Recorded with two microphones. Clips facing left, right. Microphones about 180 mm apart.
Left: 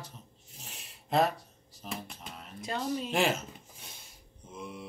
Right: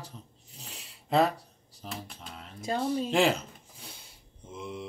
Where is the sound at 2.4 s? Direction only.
30° right (ahead or behind).